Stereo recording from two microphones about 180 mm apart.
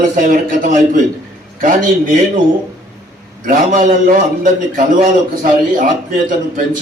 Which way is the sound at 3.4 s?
50° right (ahead or behind).